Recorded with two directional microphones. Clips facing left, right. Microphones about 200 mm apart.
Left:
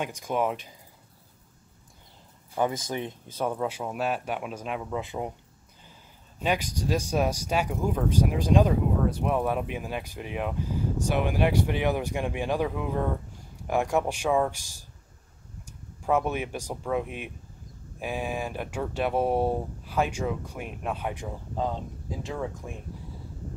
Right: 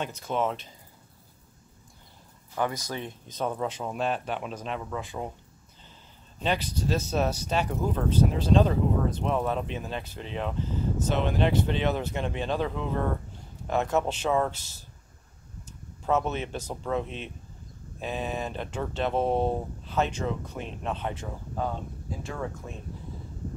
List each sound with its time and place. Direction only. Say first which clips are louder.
0.0 s speech: left 1 dB; 10° left (ahead or behind)
2.6 s speech: left 3 dB; 15° left (ahead or behind)
6.4 s speech: left 1 dB; 10° left (ahead or behind)
16.0 s speech: left 1 dB; 10° left (ahead or behind)